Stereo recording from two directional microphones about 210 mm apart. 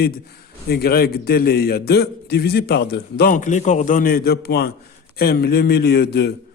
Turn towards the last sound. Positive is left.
turn(degrees=50)  # may be behind; listen again after turning